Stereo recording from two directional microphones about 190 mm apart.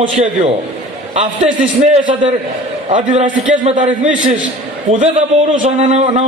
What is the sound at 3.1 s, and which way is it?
Speech, 40° right (ahead or behind).